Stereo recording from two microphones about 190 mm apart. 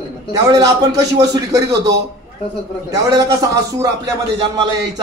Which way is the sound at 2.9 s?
20° right (ahead or behind).